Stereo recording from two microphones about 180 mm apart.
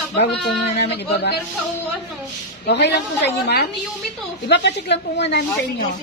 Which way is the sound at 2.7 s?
70° left (ahead or behind).